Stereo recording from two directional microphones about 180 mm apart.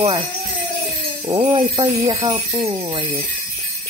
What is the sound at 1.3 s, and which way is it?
Jingle bell, 25° right (ahead or behind).